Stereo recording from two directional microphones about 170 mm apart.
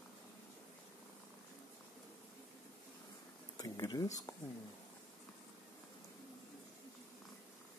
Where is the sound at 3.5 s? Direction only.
20° left (ahead or behind).